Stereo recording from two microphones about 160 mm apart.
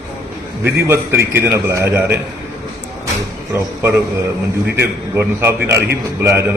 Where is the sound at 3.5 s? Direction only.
15° right (ahead or behind).